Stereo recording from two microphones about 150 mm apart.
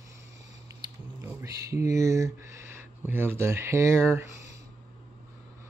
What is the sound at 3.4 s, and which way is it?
Speech, 15° right (ahead or behind).